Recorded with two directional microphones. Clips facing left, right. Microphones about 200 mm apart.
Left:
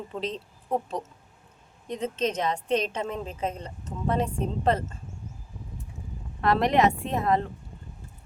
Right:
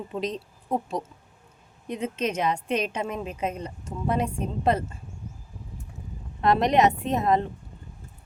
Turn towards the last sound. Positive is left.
turn(degrees=-20)  # may be behind; listen again after turning